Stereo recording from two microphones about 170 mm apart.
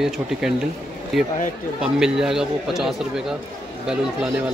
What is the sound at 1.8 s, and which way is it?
Speech, 5° right (ahead or behind).